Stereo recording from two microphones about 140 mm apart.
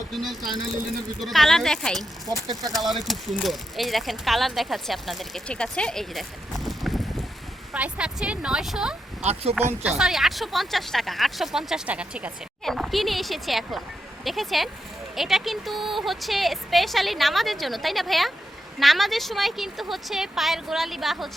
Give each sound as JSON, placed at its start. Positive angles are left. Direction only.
{"t": 0.1, "sound": "speech", "side_deg": 0}
{"t": 9.2, "sound": "speech", "side_deg": -45}
{"t": 10.0, "sound": "speech", "side_deg": 0}